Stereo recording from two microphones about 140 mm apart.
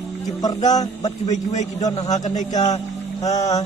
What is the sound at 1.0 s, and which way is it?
Speech, 60° left (ahead or behind).